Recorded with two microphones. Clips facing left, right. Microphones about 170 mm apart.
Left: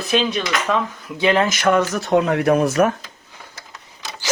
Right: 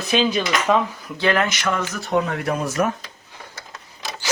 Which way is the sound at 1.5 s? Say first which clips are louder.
Left 7 dB; 50° left (ahead or behind).